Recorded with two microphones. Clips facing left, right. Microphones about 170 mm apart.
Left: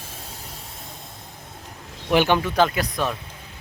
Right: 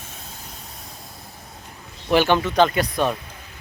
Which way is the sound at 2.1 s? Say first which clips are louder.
Right 1 dB; 15° left (ahead or behind).